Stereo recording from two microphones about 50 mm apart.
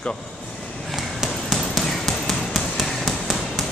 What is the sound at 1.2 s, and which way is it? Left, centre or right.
Basketball bounce, centre.